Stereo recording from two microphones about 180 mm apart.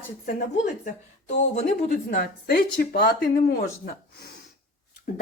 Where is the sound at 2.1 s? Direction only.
55° left (ahead or behind).